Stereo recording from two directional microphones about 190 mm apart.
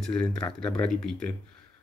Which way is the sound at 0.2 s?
5° left (ahead or behind).